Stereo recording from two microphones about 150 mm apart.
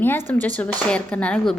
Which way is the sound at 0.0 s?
15° left (ahead or behind).